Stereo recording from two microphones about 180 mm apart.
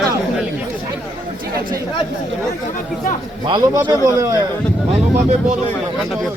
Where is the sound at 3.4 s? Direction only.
25° right (ahead or behind).